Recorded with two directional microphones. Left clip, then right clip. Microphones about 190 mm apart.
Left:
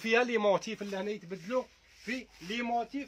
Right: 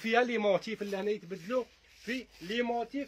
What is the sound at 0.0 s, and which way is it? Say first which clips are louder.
Speech: left 1 dB; 40° left (ahead or behind).